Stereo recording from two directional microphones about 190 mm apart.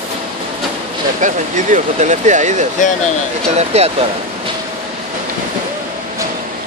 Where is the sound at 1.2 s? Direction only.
40° right (ahead or behind).